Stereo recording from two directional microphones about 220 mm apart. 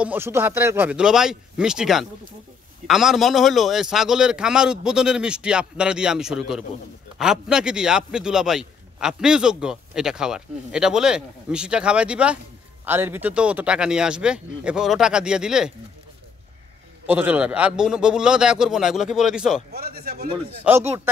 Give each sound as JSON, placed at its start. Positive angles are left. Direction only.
{"t": 0.0, "sound": "a man's voice", "side_deg": -10}
{"t": 17.0, "sound": "a man's voice", "side_deg": -5}
{"t": 19.7, "sound": "speech", "side_deg": -45}
{"t": 20.7, "sound": "speech", "side_deg": -5}